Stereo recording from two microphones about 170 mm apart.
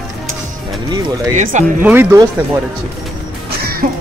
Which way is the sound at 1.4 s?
45° right (ahead or behind).